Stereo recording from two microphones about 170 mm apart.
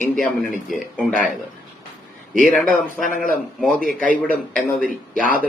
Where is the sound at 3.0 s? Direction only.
55° left (ahead or behind).